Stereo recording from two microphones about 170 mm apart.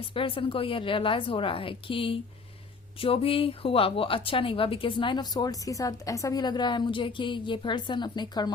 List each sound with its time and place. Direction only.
0.1 s a woman's voice: 30° left (ahead or behind)